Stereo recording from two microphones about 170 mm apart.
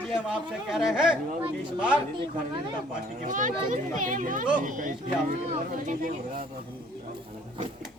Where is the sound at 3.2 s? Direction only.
50° right (ahead or behind).